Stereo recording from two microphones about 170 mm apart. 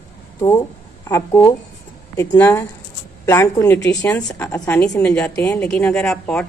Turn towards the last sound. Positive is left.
turn(degrees=5)  # may be behind; listen again after turning